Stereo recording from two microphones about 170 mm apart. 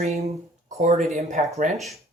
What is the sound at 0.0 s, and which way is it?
A man's voice, 40° right (ahead or behind).